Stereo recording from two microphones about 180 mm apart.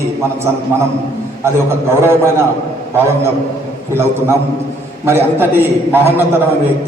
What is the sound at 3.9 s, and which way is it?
A man's voice, 15° right (ahead or behind).